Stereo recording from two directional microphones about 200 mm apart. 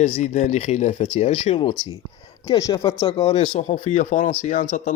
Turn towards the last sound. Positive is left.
turn(degrees=40)  # may be behind; listen again after turning